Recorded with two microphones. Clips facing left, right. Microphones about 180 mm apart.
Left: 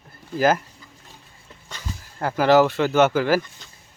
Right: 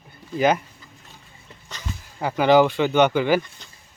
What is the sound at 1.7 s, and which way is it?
Speech, 5° left (ahead or behind).